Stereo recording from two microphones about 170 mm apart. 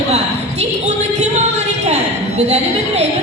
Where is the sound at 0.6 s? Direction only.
45° right (ahead or behind).